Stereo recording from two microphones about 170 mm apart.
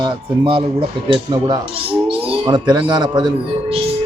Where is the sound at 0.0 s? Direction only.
30° right (ahead or behind).